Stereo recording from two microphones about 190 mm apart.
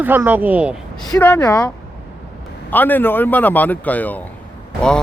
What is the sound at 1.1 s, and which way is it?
Speech, 15° left (ahead or behind).